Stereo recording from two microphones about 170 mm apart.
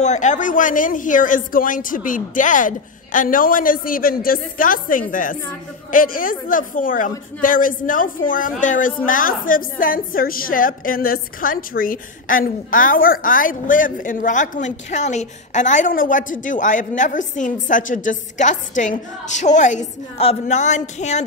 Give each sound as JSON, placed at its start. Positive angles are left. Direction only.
{"t": 0.0, "sound": "a woman's voice", "side_deg": 45}